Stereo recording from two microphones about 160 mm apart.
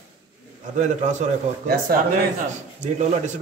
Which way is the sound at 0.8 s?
50° right (ahead or behind).